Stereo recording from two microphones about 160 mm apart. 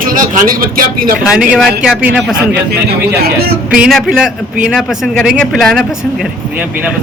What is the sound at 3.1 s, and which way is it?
Speech, 75° right (ahead or behind).